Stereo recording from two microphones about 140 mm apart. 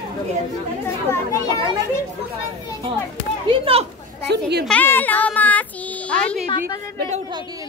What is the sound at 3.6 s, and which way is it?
Speech, 45° right (ahead or behind).